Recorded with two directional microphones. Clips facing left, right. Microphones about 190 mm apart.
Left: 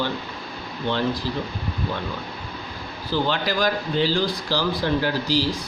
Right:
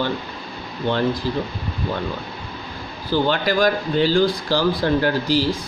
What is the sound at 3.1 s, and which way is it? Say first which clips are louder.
Speech: right 4 dB; 55° right (ahead or behind).